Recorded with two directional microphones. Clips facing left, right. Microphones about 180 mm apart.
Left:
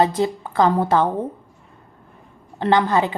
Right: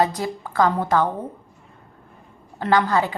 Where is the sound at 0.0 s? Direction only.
25° left (ahead or behind).